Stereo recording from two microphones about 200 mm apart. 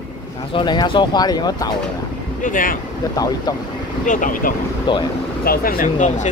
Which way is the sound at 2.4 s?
40° left (ahead or behind).